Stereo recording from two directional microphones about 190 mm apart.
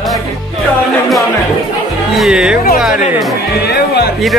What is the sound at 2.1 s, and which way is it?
Speech, centre (ahead or behind).